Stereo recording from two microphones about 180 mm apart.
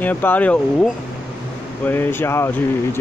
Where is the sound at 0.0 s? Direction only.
10° left (ahead or behind).